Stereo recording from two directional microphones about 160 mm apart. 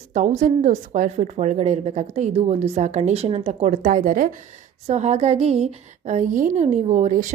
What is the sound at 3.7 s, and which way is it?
Speech, 55° right (ahead or behind).